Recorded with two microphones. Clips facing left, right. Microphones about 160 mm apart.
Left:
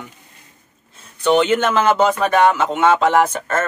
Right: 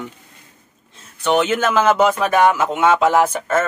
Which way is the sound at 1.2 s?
5° right (ahead or behind).